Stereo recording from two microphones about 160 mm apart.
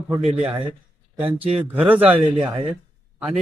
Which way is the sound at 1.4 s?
10° right (ahead or behind).